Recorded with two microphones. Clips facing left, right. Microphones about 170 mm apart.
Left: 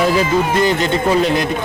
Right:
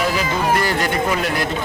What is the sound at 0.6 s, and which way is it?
Speech, 20° left (ahead or behind).